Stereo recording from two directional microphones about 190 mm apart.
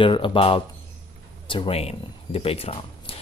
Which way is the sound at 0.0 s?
25° left (ahead or behind).